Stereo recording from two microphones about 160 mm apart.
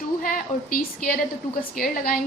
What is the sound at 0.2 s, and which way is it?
A woman's voice, 60° left (ahead or behind).